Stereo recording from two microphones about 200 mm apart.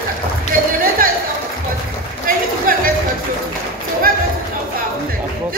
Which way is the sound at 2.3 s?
45° right (ahead or behind).